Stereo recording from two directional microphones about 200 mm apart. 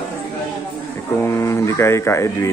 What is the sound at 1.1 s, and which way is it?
Speech, 15° left (ahead or behind).